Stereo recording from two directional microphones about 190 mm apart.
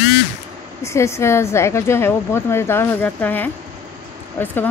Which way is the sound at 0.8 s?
15° left (ahead or behind).